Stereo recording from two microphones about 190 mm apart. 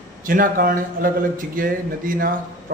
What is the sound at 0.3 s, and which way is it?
A man's voice, 45° right (ahead or behind).